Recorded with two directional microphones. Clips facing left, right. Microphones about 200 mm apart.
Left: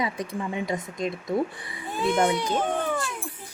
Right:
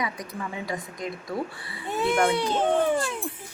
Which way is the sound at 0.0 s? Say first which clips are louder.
Left 3 dB; 25° left (ahead or behind).